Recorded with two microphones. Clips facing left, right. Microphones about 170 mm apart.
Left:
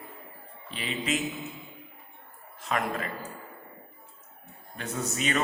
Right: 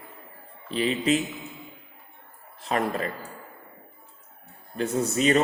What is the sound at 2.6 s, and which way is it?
Speech, 35° right (ahead or behind).